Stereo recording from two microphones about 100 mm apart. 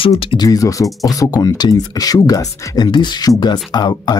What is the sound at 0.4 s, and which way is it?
Speech, 35° left (ahead or behind).